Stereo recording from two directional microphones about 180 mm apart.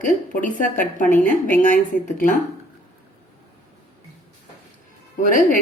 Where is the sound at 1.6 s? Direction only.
50° left (ahead or behind).